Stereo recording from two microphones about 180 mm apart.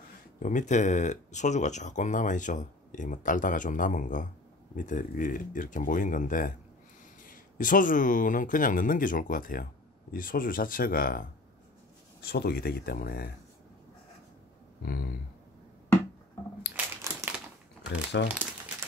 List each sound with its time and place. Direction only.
0.4 s speech: 45° left (ahead or behind)
16.7 s crumpling: 10° right (ahead or behind)
17.8 s speech: 80° left